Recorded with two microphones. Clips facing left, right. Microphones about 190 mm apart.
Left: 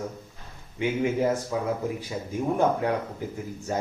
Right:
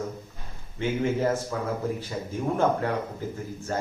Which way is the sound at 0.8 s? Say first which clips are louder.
Left 1 dB; 15° left (ahead or behind).